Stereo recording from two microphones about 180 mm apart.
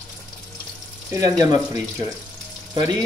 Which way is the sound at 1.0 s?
20° right (ahead or behind).